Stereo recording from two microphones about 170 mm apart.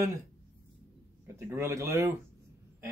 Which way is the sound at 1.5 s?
15° right (ahead or behind).